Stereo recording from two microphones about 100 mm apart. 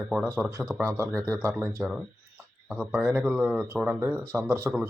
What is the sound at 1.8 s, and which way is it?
Speech, 10° right (ahead or behind).